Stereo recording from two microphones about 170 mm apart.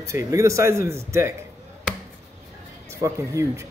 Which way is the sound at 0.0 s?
15° right (ahead or behind).